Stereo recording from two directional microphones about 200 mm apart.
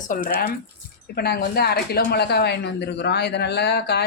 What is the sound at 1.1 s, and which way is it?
A man's voice, 50° left (ahead or behind).